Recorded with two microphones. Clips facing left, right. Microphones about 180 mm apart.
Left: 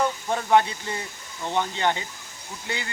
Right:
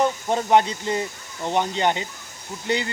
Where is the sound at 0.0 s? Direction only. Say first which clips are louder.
Right 4 dB; 20° right (ahead or behind).